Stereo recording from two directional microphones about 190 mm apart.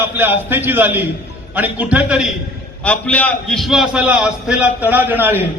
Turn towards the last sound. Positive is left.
turn(degrees=-10)  # may be behind; listen again after turning